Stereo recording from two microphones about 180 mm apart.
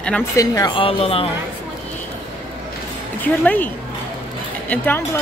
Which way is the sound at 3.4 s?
10° left (ahead or behind).